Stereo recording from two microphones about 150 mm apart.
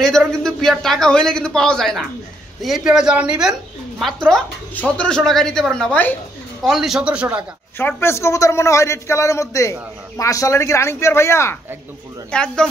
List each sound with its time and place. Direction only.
0.0 s a man's voice: 5° left (ahead or behind)
4.3 s a man's voice: 5° left (ahead or behind)
6.6 s speech: centre (ahead or behind)
7.7 s a man's voice: 15° left (ahead or behind)
12.3 s speech: 5° left (ahead or behind)